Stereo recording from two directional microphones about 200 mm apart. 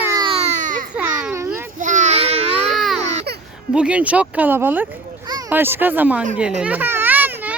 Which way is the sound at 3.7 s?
5° right (ahead or behind).